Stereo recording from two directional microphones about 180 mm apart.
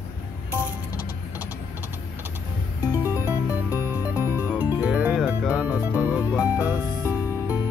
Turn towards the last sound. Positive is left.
turn(degrees=-10)  # may be behind; listen again after turning